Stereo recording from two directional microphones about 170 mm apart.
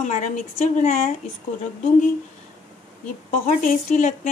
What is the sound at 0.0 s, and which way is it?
Speech, 45° left (ahead or behind).